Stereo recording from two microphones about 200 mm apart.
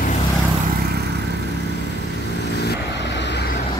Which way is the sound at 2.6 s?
60° left (ahead or behind).